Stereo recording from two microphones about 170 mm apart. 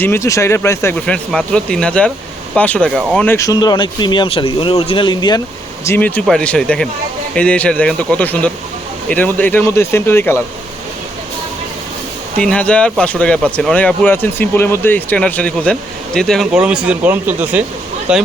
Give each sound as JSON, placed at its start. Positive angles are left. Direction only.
{"t": 0.0, "sound": "speech", "side_deg": 15}
{"t": 3.3, "sound": "speech", "side_deg": 20}
{"t": 5.8, "sound": "speech", "side_deg": 10}
{"t": 12.4, "sound": "speech", "side_deg": 5}